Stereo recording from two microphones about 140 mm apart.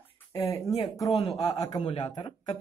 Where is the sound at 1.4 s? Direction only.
25° left (ahead or behind).